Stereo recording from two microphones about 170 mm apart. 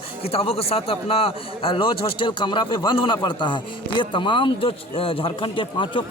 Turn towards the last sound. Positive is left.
turn(degrees=30)  # may be behind; listen again after turning